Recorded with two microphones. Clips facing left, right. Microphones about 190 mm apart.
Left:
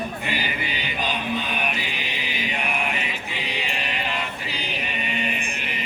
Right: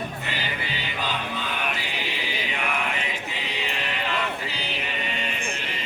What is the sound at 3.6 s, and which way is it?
Chant, 15° left (ahead or behind).